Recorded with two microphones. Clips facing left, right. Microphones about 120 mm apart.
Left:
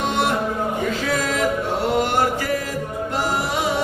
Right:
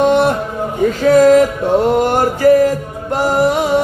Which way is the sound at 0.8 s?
45° right (ahead or behind).